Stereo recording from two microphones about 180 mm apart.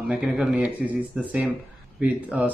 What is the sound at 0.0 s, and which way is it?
Speech, 5° right (ahead or behind).